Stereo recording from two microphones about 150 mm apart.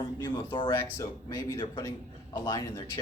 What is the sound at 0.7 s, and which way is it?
Speech, 20° left (ahead or behind).